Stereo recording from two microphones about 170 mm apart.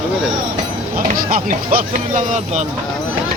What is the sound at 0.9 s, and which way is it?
Speech, 55° right (ahead or behind).